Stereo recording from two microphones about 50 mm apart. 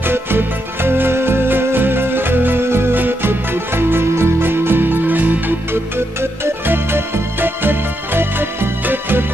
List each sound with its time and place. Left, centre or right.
0.0 s music: right
5.7 s music: right